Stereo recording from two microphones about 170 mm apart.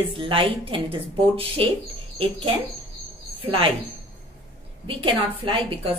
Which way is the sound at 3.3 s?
30° right (ahead or behind).